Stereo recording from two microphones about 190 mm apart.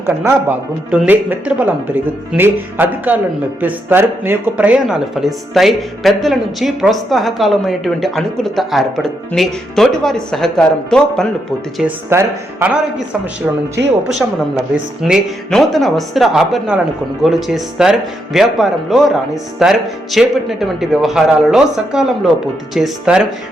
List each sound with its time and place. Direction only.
0.0 s speech: 10° right (ahead or behind)
11.8 s speech: 10° right (ahead or behind)
13.8 s speech: 65° right (ahead or behind)
14.1 s speech: centre (ahead or behind)